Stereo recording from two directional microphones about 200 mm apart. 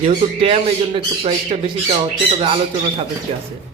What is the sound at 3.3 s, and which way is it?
Speech, 30° right (ahead or behind).